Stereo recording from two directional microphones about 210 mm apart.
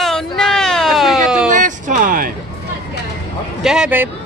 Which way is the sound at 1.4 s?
35° right (ahead or behind).